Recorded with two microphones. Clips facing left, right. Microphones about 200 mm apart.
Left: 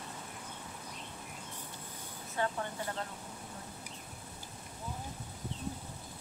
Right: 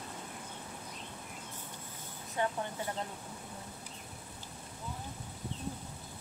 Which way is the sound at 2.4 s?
15° right (ahead or behind).